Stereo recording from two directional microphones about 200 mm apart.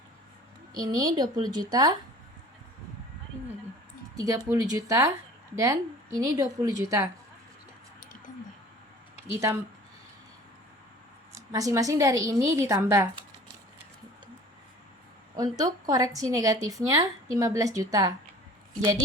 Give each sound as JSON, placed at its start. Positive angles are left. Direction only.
{"t": 0.8, "sound": "a woman's voice", "side_deg": -20}
{"t": 4.1, "sound": "a woman's voice", "side_deg": -15}
{"t": 9.3, "sound": "a woman's voice", "side_deg": -15}
{"t": 11.3, "sound": "a woman's voice", "side_deg": -15}
{"t": 15.4, "sound": "a woman's voice", "side_deg": -20}